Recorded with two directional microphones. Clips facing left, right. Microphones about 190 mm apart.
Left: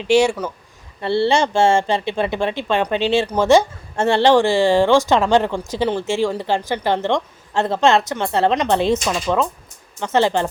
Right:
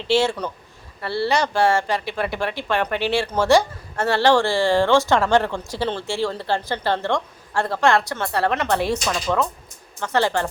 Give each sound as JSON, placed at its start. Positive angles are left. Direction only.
{"t": 0.0, "sound": "speech", "side_deg": 15}
{"t": 1.0, "sound": "speech", "side_deg": 25}